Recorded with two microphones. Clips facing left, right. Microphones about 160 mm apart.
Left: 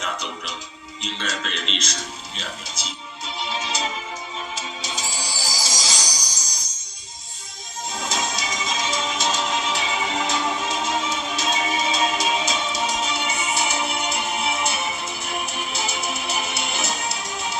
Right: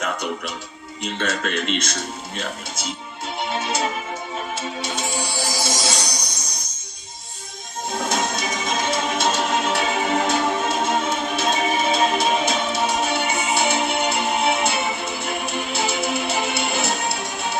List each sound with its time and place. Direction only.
0.0 s music: 50° right (ahead or behind)
1.0 s speech: 55° right (ahead or behind)
4.5 s music: 55° right (ahead or behind)
6.1 s music: 30° right (ahead or behind)
7.9 s music: 55° right (ahead or behind)